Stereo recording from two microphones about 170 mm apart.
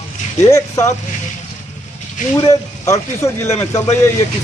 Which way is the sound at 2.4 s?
20° left (ahead or behind).